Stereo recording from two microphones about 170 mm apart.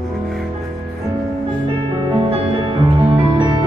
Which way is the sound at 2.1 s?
30° right (ahead or behind).